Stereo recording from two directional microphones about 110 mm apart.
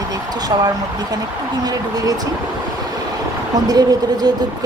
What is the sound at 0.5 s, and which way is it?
Speech, 35° right (ahead or behind).